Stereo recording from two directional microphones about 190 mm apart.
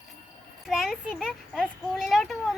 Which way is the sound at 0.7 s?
Centre (ahead or behind).